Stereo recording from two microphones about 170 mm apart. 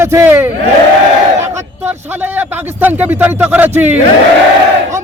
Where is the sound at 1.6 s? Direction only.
10° right (ahead or behind).